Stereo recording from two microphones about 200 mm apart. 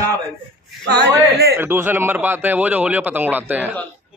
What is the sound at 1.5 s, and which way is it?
A man's voice, 10° right (ahead or behind).